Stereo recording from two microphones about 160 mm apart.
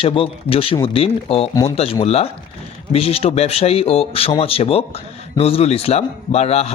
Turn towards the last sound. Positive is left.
turn(degrees=40)  # may be behind; listen again after turning